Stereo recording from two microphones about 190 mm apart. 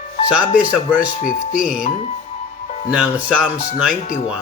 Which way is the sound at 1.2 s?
45° left (ahead or behind).